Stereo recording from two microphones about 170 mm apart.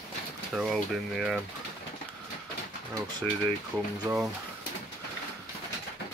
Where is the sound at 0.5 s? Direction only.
Centre (ahead or behind).